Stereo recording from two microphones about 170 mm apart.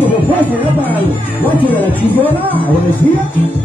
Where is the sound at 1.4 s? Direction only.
10° left (ahead or behind).